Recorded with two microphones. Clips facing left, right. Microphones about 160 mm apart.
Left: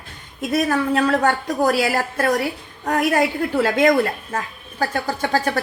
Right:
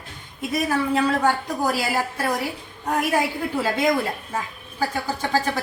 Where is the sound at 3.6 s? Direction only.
70° left (ahead or behind).